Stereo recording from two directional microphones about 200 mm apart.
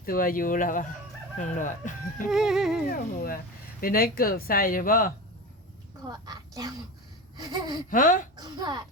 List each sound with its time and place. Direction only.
0.0 s speech: 45° left (ahead or behind)
2.3 s a sound: centre (ahead or behind)
3.8 s speech: 45° left (ahead or behind)
6.1 s a child's voice: 20° right (ahead or behind)
7.9 s speech: 45° left (ahead or behind)
8.4 s a child's voice: 20° right (ahead or behind)